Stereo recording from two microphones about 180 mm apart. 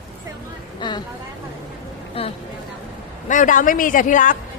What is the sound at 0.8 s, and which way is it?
Speech, 25° left (ahead or behind).